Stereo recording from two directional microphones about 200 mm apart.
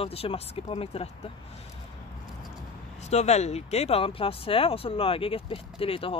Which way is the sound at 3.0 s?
35° left (ahead or behind).